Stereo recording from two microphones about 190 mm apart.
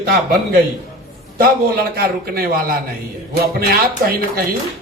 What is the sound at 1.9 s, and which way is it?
Speech, 50° right (ahead or behind).